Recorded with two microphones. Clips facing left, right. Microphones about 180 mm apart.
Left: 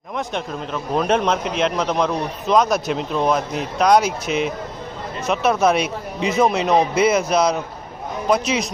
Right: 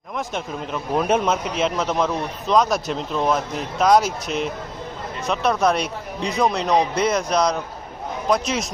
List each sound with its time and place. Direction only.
0.2 s a man's voice: 5° right (ahead or behind)